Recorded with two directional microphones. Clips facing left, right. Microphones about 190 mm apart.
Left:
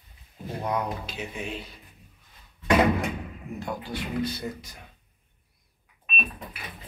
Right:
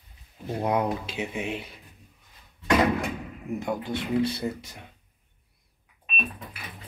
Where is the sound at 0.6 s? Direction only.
25° right (ahead or behind).